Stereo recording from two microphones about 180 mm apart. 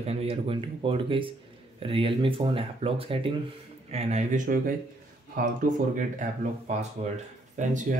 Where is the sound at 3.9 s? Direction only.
40° right (ahead or behind).